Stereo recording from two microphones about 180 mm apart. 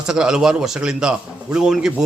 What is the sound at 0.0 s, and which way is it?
A man's voice, 5° right (ahead or behind).